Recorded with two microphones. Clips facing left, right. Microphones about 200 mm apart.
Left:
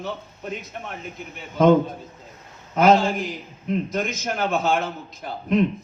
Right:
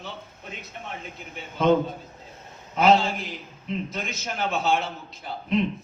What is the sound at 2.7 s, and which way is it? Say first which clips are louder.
A man's voice: left 3 dB; 45° left (ahead or behind).